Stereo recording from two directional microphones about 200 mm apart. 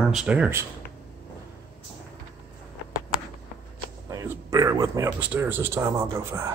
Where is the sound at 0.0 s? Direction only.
5° right (ahead or behind).